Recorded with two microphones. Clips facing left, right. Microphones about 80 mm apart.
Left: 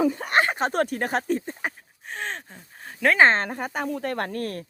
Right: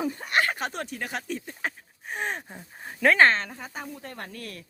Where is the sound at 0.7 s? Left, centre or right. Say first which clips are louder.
Left 9 dB; left.